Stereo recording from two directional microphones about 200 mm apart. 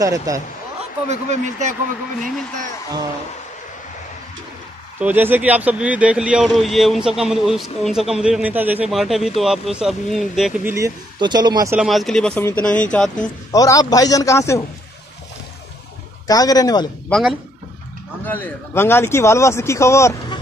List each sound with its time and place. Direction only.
0.0 s speech: 15° right (ahead or behind)
1.0 s speech: 35° right (ahead or behind)
5.0 s speech: 10° right (ahead or behind)
10.7 s speech: 20° right (ahead or behind)
11.7 s speech: centre (ahead or behind)
13.5 s a man's voice: 15° left (ahead or behind)
16.3 s speech: 20° left (ahead or behind)
17.1 s speech: 5° right (ahead or behind)
18.2 s a man's voice: 10° left (ahead or behind)